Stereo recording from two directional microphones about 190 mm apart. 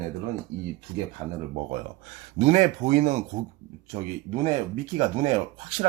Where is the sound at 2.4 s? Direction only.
40° right (ahead or behind).